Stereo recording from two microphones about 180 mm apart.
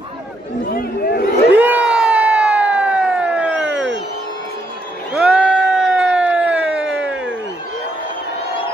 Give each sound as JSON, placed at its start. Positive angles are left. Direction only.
{"t": 0.7, "sound": "speech", "side_deg": 55}
{"t": 1.5, "sound": "a sound", "side_deg": -10}
{"t": 5.1, "sound": "crowd", "side_deg": -5}